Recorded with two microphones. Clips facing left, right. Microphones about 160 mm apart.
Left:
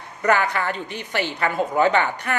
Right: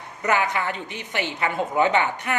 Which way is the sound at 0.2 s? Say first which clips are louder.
Left 3 dB; 20° right (ahead or behind).